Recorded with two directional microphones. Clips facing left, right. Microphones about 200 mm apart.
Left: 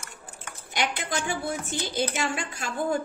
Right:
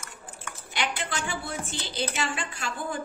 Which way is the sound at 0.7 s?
45° left (ahead or behind).